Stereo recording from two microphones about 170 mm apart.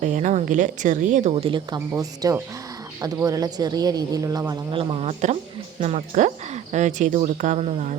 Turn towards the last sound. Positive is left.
turn(degrees=-40)  # may be behind; listen again after turning